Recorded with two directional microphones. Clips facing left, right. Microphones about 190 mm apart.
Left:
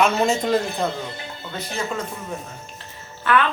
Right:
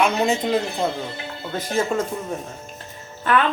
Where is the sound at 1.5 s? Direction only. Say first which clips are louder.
Right 6 dB; 45° right (ahead or behind).